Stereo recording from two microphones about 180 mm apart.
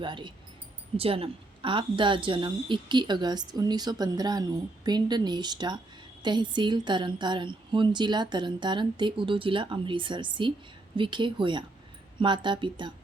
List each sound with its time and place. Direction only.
0.0 s a woman's voice: 25° right (ahead or behind)